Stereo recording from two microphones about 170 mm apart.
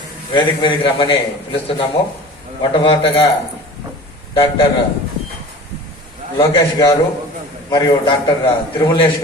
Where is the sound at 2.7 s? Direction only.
30° left (ahead or behind).